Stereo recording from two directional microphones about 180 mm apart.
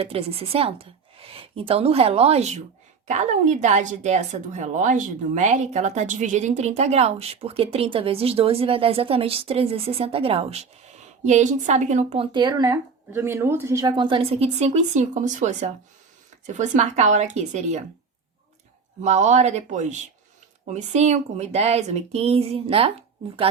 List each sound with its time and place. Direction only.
0.0 s a woman's voice: 35° right (ahead or behind)
19.0 s a woman's voice: 40° right (ahead or behind)